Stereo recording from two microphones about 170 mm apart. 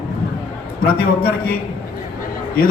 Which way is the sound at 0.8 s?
65° left (ahead or behind).